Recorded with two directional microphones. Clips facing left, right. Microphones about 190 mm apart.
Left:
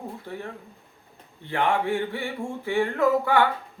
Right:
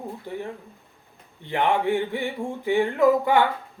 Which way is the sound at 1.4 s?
15° right (ahead or behind).